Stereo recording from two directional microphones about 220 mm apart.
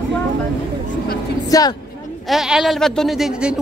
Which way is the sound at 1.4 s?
15° left (ahead or behind).